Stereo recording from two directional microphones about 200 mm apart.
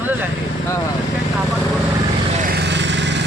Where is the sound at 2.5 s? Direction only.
60° right (ahead or behind).